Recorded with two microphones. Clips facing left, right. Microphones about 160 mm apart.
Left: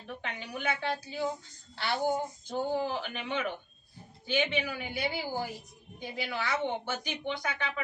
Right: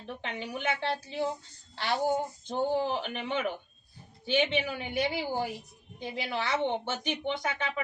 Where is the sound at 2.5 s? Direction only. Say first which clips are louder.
Right 3 dB; 20° right (ahead or behind).